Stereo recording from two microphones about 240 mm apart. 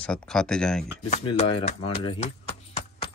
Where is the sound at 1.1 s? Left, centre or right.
Left.